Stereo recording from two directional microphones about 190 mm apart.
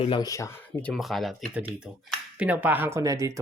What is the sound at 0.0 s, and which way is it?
Speech, 25° left (ahead or behind).